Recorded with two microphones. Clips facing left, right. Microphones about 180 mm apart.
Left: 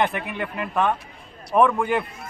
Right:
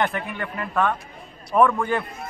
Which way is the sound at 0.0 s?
15° left (ahead or behind).